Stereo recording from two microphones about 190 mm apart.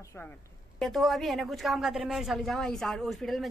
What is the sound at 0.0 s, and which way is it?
Speech, 15° left (ahead or behind).